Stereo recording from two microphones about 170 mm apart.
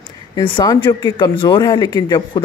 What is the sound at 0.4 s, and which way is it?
Speech, 30° left (ahead or behind).